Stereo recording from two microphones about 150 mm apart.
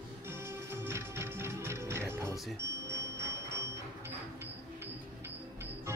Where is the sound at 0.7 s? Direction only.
15° right (ahead or behind).